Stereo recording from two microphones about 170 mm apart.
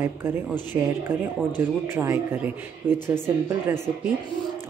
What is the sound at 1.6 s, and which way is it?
Speech, 15° right (ahead or behind).